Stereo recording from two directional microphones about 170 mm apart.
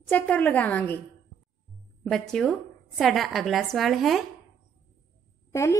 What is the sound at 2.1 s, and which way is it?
A woman's voice, 5° left (ahead or behind).